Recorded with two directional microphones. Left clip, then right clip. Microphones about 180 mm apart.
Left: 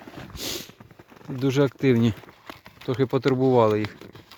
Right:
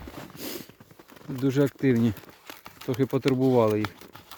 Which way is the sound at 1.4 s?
5° right (ahead or behind).